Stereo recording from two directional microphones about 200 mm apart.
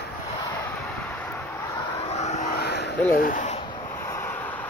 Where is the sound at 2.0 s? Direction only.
30° left (ahead or behind).